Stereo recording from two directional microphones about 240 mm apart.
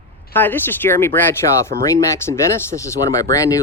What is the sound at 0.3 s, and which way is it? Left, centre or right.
Speech, centre.